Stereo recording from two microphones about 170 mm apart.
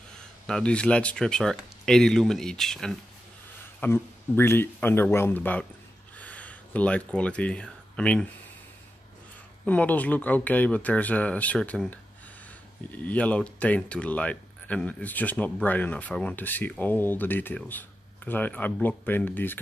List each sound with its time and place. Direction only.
0.5 s speech: 5° left (ahead or behind)
3.8 s speech: 15° left (ahead or behind)
9.7 s speech: 10° left (ahead or behind)